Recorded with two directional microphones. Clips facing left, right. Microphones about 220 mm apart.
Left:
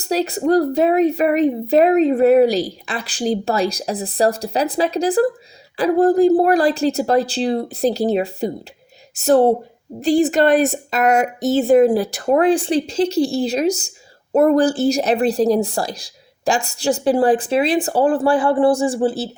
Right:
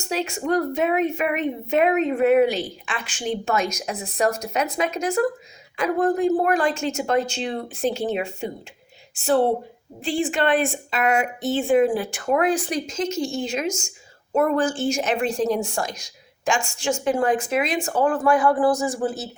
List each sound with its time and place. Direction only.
0.0 s a woman's voice: 35° left (ahead or behind)